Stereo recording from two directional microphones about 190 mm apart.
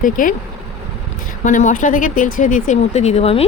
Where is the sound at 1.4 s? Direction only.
40° left (ahead or behind).